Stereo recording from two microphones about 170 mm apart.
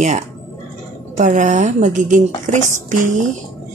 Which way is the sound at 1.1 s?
45° right (ahead or behind).